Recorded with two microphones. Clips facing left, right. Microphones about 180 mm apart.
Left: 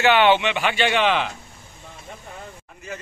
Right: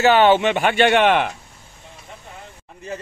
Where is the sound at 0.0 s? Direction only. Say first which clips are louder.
Right 3 dB; 40° right (ahead or behind); by 1.3 s 60° right (ahead or behind).